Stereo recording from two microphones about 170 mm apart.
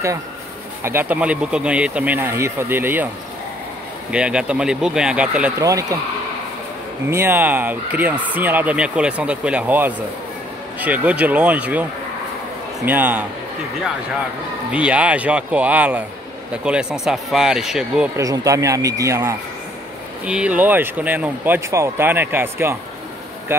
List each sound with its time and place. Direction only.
0.8 s speech: 10° right (ahead or behind)
4.1 s speech: 5° right (ahead or behind)
5.6 s speech: 20° right (ahead or behind)
7.1 s speech: 15° right (ahead or behind)
12.8 s speech: 10° right (ahead or behind)
14.7 s speech: 5° right (ahead or behind)
18.1 s speech: 20° right (ahead or behind)